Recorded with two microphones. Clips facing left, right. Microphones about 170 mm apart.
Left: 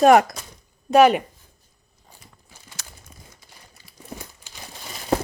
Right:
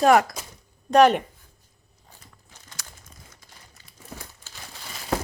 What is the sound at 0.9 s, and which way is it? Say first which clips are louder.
Speech: left 2 dB; 5° left (ahead or behind).